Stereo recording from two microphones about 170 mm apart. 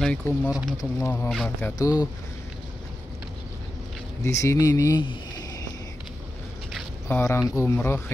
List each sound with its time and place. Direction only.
0.0 s speech: 10° left (ahead or behind)
4.2 s speech: 15° left (ahead or behind)
7.1 s speech: 10° left (ahead or behind)